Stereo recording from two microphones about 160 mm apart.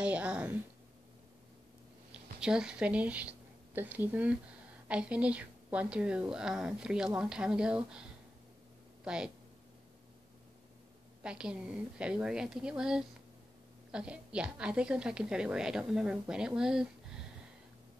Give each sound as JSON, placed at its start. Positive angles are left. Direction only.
{"t": 0.0, "sound": "a woman's voice", "side_deg": -10}
{"t": 2.4, "sound": "a woman's voice", "side_deg": -5}
{"t": 9.0, "sound": "speech", "side_deg": -5}
{"t": 11.2, "sound": "a woman's voice", "side_deg": -5}